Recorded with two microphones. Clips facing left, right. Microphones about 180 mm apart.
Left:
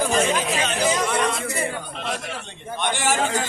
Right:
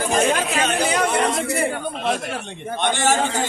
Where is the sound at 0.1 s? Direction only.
50° right (ahead or behind).